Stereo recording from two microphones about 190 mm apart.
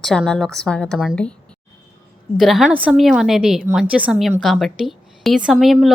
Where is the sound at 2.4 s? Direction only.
Centre (ahead or behind).